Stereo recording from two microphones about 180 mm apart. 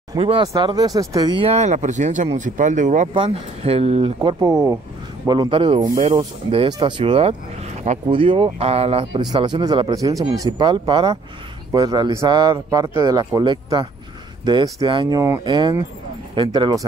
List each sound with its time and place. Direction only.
0.1 s a man's voice: 25° right (ahead or behind); by 3.1 s 45° right (ahead or behind)
3.1 s a man's voice: 30° right (ahead or behind)
5.8 s speech: 40° right (ahead or behind)
6.1 s speech: 30° right (ahead or behind)
8.1 s a man's voice: 30° right (ahead or behind)